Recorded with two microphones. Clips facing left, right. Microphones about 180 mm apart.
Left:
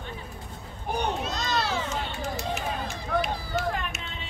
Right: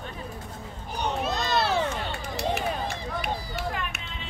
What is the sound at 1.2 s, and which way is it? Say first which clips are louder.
Run: right 3 dB; 60° right (ahead or behind).